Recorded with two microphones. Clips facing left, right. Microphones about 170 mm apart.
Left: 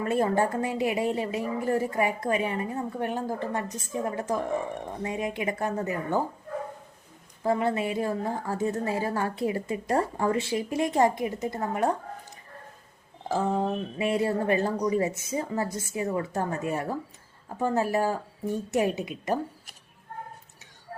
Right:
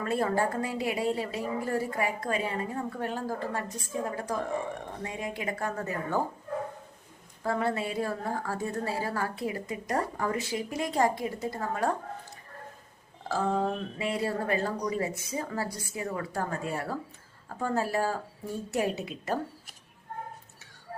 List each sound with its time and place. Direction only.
0.0 s a woman's voice: 20° left (ahead or behind)
7.4 s a woman's voice: 20° left (ahead or behind)
13.2 s a woman's voice: 15° left (ahead or behind)